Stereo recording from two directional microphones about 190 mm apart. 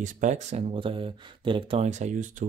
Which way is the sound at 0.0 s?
40° right (ahead or behind).